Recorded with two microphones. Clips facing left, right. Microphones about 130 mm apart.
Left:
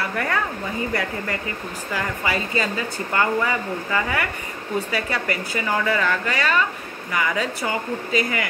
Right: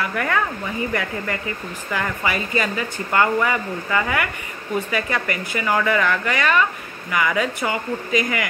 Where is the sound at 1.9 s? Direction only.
35° left (ahead or behind).